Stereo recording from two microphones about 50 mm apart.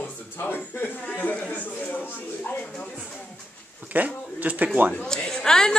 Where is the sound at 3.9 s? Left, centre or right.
Right.